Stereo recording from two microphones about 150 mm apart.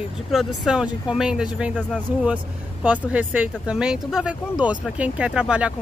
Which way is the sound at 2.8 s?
10° right (ahead or behind).